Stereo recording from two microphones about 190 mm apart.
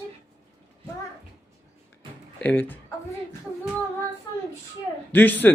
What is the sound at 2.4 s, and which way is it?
Speech, 10° left (ahead or behind).